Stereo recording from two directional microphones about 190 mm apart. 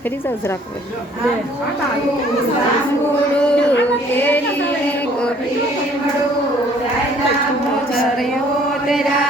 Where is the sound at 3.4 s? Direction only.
5° left (ahead or behind).